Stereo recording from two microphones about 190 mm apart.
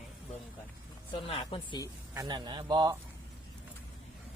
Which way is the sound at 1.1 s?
30° left (ahead or behind).